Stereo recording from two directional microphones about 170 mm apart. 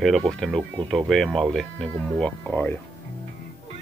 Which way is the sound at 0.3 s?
Centre (ahead or behind).